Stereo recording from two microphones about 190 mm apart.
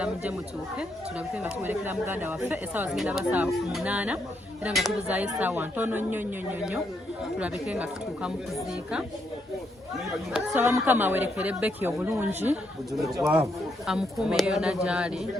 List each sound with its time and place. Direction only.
0.0 s speech: 5° right (ahead or behind)
1.4 s speech: 10° right (ahead or behind)
10.3 s speech: 10° right (ahead or behind)
12.9 s speech: centre (ahead or behind)